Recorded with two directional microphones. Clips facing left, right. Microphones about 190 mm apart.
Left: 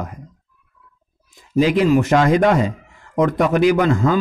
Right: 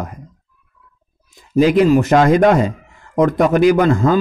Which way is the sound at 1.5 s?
45° right (ahead or behind).